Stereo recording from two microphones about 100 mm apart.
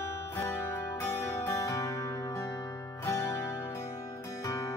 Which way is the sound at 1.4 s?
30° left (ahead or behind).